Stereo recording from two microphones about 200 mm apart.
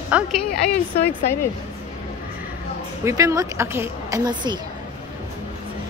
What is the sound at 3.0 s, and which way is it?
Speech, 15° right (ahead or behind).